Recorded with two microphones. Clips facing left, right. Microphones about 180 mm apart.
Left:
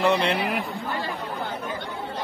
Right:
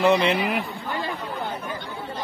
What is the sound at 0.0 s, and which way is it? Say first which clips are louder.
Speech: right 3 dB; centre (ahead or behind).